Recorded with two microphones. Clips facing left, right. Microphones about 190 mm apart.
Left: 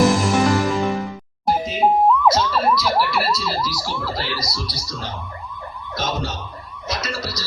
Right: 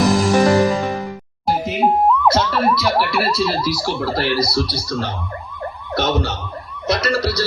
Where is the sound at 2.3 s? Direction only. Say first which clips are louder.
Right 2 dB; 60° right (ahead or behind).